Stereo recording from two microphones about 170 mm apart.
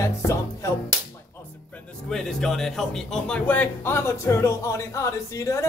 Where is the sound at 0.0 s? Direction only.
15° left (ahead or behind).